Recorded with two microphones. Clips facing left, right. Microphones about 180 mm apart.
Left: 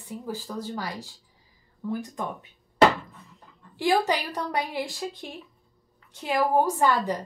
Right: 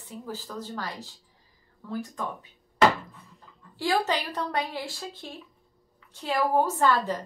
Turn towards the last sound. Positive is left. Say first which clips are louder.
# left 1 dB
turn(degrees=15)  # may be behind; listen again after turning